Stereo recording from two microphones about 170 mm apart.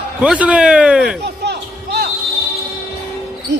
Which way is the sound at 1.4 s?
80° right.